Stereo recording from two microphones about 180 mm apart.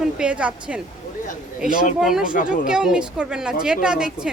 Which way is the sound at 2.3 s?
50° left (ahead or behind).